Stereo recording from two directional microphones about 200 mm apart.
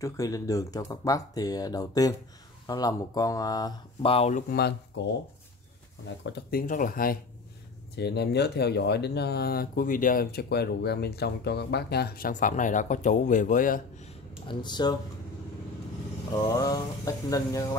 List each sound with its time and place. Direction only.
0.0 s speech: 15° left (ahead or behind)
4.5 s speech: 55° left (ahead or behind)
6.2 s speech: 55° left (ahead or behind)
6.6 s speech: 40° left (ahead or behind)
7.9 s speech: 55° left (ahead or behind)
14.5 s speech: 20° left (ahead or behind)
16.5 s speech: 15° left (ahead or behind)